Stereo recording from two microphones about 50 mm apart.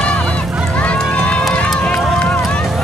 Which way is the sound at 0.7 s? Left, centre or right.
Left.